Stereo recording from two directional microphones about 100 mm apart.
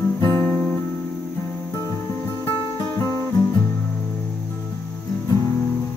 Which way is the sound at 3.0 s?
30° left (ahead or behind).